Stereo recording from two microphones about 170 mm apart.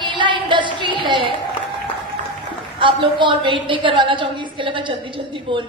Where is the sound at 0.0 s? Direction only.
30° right (ahead or behind).